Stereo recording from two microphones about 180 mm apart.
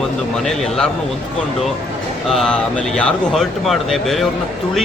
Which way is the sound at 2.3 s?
5° left (ahead or behind).